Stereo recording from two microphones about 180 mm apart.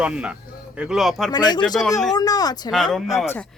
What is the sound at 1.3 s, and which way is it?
Speech, 25° left (ahead or behind).